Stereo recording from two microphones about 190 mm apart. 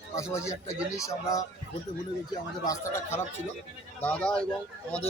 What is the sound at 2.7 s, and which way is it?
A man's voice, 15° left (ahead or behind).